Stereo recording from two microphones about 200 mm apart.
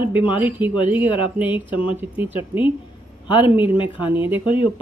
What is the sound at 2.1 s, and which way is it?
Speech, 10° right (ahead or behind).